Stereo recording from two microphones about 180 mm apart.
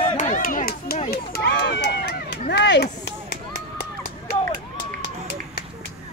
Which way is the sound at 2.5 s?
70° left (ahead or behind).